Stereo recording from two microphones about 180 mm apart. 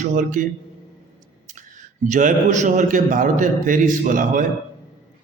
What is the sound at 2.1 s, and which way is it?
A man's voice, 45° right (ahead or behind).